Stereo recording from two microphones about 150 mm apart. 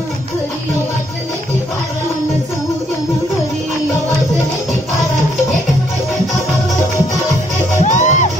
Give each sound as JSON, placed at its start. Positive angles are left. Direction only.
{"t": 7.8, "sound": "music", "side_deg": 55}